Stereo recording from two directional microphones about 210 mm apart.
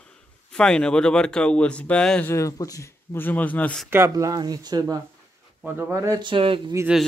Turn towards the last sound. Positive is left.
turn(degrees=-5)  # may be behind; listen again after turning